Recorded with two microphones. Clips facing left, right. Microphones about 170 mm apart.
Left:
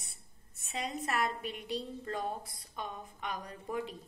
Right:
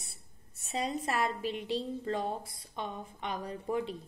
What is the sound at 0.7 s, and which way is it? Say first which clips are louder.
A woman's voice: right 3 dB; 30° right (ahead or behind).